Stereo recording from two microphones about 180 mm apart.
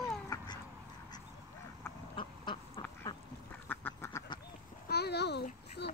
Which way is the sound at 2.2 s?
30° left (ahead or behind).